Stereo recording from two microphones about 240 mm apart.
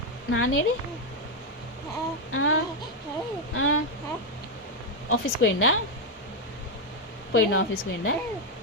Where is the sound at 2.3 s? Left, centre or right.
Left.